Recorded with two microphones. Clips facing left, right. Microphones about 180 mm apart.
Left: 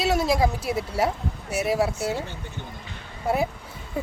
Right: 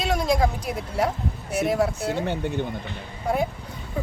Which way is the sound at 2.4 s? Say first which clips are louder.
Right 12 dB; 65° right (ahead or behind).